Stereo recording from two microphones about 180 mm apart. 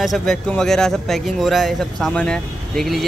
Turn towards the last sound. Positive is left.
turn(degrees=5)  # may be behind; listen again after turning